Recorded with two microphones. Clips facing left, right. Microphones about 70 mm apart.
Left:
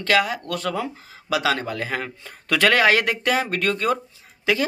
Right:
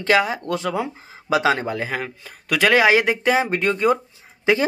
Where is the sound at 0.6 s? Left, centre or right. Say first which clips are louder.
Right 2 dB; centre.